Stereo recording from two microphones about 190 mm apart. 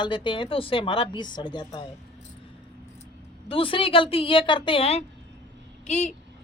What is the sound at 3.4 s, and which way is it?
A woman's voice, 30° left (ahead or behind).